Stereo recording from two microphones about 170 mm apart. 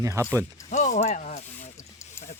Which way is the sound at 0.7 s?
45° left (ahead or behind).